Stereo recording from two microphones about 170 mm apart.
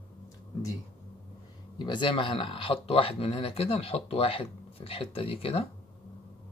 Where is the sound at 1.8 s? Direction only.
30° left (ahead or behind).